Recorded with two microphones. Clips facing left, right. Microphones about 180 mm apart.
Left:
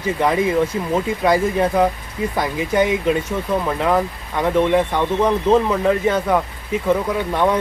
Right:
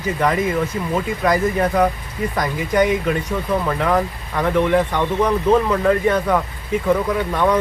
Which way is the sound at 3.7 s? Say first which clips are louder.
Left 1 dB; 15° left (ahead or behind).